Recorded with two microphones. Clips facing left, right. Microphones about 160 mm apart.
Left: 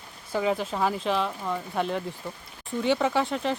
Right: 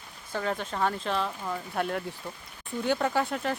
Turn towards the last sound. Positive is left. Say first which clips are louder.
# left 2 dB
turn(degrees=0)  # may be behind; listen again after turning